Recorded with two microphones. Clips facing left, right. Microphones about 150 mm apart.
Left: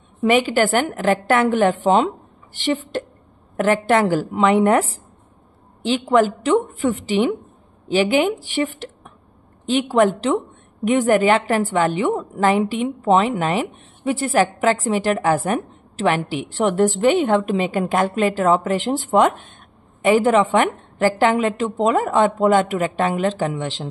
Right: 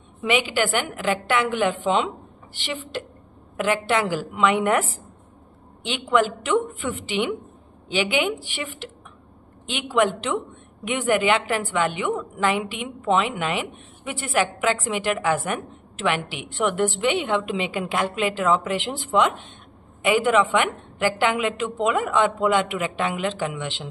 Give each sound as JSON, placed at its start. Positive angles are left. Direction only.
{"t": 0.2, "sound": "a woman's voice", "side_deg": 45}